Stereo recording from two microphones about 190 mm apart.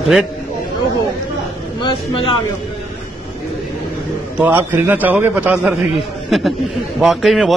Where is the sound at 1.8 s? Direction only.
25° left (ahead or behind).